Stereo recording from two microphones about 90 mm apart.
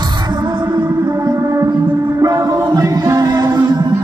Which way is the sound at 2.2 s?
45° right (ahead or behind).